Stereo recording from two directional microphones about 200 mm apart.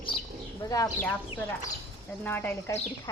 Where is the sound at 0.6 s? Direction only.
15° left (ahead or behind).